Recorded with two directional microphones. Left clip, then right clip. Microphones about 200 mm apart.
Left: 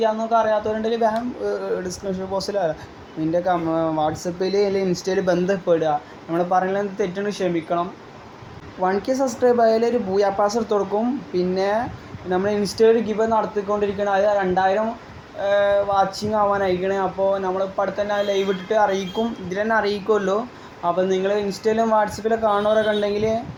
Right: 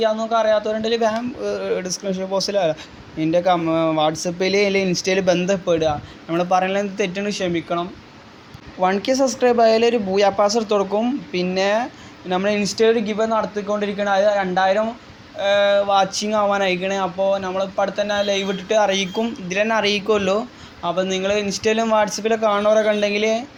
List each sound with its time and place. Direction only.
0.0 s speech: 20° right (ahead or behind)
9.0 s speech: 20° right (ahead or behind); by 23.0 s 35° right (ahead or behind)
23.0 s speech: 20° right (ahead or behind)